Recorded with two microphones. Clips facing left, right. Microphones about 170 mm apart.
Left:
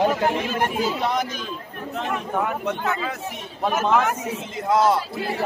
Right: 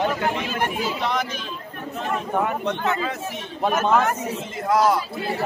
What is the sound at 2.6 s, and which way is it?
A man's voice, 5° left (ahead or behind).